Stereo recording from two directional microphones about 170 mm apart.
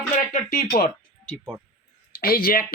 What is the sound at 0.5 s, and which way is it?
Speech, 55° left (ahead or behind).